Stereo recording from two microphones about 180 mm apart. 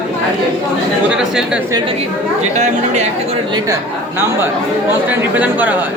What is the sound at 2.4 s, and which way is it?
Speech, 40° right (ahead or behind).